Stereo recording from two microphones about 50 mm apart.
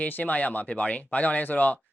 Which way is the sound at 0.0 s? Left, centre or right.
Left.